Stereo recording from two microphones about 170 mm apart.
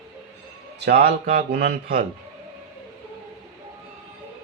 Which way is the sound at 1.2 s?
55° right (ahead or behind).